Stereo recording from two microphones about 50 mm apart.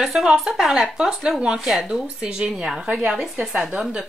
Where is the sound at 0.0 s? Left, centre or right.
Centre.